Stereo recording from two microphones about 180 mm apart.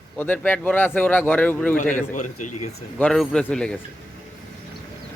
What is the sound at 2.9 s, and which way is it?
Speech, 5° left (ahead or behind).